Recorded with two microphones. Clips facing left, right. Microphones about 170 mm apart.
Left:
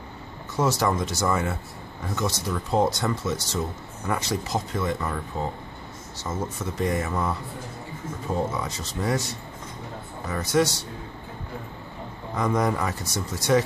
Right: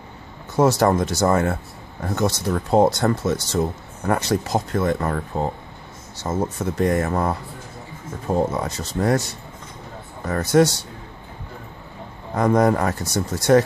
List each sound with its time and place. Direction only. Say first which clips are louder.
0.6 s speech: right 7 dB; 50° right (ahead or behind)
10.2 s speech: right 6 dB; 55° right (ahead or behind)
12.4 s speech: right 7 dB; 50° right (ahead or behind)